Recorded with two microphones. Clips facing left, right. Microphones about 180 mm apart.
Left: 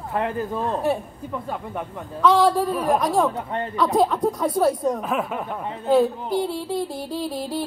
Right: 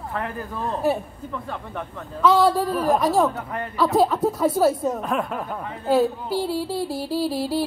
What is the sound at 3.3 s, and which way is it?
Speech, 25° left (ahead or behind).